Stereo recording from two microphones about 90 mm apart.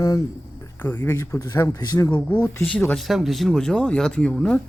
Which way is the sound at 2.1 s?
20° left (ahead or behind).